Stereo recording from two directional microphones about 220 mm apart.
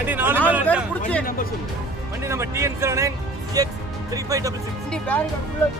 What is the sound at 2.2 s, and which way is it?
Speech, 10° right (ahead or behind).